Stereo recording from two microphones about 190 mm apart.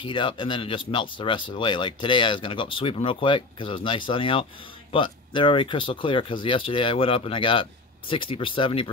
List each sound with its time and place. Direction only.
0.0 s speech: 25° left (ahead or behind)